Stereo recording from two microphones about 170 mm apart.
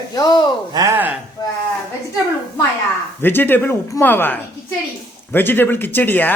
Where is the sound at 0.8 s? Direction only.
15° right (ahead or behind).